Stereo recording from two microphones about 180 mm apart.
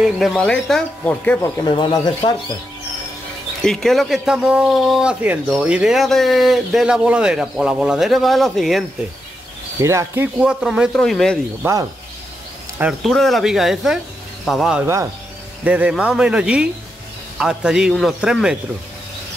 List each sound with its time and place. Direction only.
0.0 s speech: centre (ahead or behind)
1.6 s speech: 25° left (ahead or behind)
3.6 s speech: centre (ahead or behind)
9.8 s speech: 15° right (ahead or behind); by 11.3 s 5° left (ahead or behind)
11.6 s speech: 15° right (ahead or behind)
13.0 s speech: centre (ahead or behind)